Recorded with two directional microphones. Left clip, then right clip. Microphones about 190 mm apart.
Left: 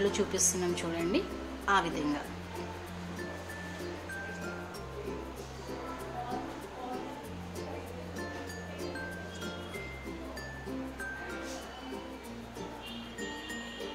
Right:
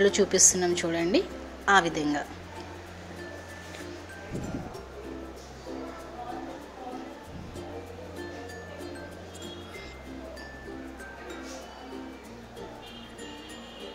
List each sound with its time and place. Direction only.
0.0 s a woman's voice: 20° right (ahead or behind)